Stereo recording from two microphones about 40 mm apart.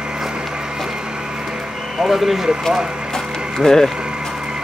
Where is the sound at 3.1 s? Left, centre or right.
Centre.